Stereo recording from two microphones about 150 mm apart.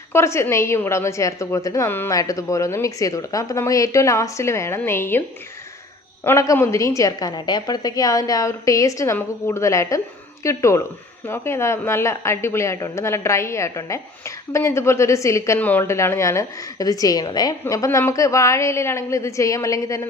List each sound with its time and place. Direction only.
0.1 s a woman's voice: 15° left (ahead or behind)
6.2 s a woman's voice: 20° left (ahead or behind)